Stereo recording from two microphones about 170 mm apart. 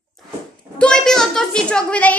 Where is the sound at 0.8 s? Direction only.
5° left (ahead or behind).